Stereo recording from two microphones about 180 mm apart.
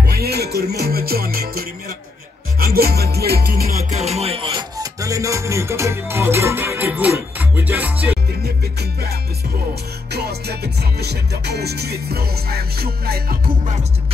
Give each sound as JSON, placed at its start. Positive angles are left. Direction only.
{"t": 0.1, "sound": "music", "side_deg": -60}
{"t": 2.6, "sound": "music", "side_deg": -60}
{"t": 3.9, "sound": "music", "side_deg": -35}
{"t": 10.1, "sound": "music", "side_deg": -65}